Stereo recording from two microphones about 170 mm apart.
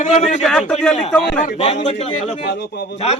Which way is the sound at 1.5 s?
40° left (ahead or behind).